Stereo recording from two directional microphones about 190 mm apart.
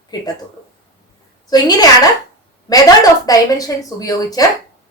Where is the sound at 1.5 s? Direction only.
20° left (ahead or behind).